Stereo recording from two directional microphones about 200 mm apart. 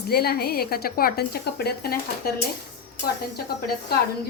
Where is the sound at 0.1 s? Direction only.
50° left (ahead or behind).